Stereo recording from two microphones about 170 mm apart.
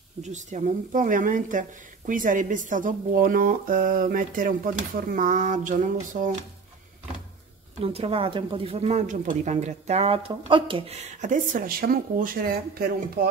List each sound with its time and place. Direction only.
0.2 s speech: 45° right (ahead or behind)
7.8 s speech: 35° right (ahead or behind)
11.1 s speech: 50° right (ahead or behind)